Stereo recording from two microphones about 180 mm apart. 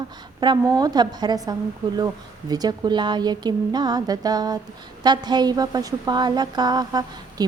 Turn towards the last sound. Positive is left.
turn(degrees=-20)  # may be behind; listen again after turning